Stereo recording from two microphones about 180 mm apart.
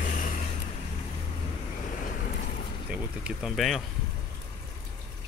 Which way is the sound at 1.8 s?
45° left (ahead or behind).